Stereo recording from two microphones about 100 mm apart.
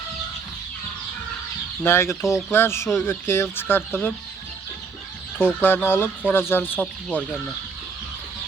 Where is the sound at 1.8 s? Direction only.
25° left (ahead or behind).